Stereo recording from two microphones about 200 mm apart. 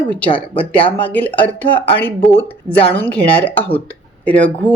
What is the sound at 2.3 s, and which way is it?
Speech, 30° left (ahead or behind).